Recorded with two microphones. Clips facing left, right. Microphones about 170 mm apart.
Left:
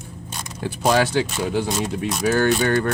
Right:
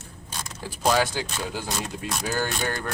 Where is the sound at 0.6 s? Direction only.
65° left (ahead or behind).